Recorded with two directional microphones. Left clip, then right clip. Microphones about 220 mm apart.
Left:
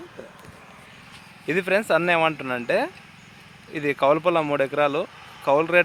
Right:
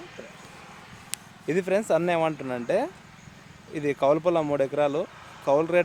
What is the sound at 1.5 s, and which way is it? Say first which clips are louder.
Speech: left 3 dB; 5° left (ahead or behind).